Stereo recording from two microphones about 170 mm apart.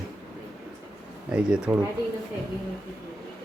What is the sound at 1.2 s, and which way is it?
Speech, 5° right (ahead or behind).